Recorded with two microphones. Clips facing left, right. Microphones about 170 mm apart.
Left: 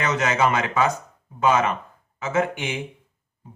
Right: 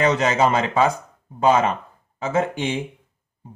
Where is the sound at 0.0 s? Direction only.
30° right (ahead or behind).